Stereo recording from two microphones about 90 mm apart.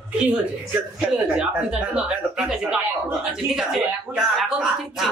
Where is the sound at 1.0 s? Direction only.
15° right (ahead or behind).